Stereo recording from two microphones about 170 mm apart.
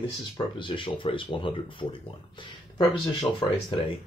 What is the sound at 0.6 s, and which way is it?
Speech, 30° left (ahead or behind).